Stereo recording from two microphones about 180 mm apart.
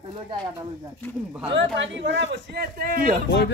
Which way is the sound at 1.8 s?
90° right.